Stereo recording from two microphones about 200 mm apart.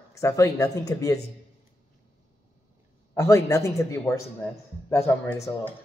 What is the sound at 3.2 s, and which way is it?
Speech, 15° left (ahead or behind).